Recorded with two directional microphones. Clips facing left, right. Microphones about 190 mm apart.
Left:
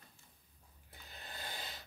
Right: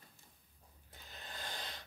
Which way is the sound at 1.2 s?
5° left (ahead or behind).